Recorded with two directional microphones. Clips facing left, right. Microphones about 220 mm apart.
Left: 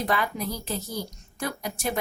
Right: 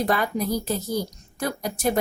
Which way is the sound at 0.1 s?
40° right (ahead or behind).